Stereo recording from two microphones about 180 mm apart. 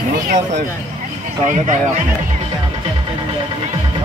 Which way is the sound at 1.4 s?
40° right (ahead or behind).